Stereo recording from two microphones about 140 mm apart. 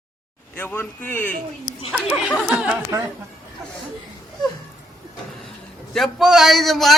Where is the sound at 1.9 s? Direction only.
5° right (ahead or behind).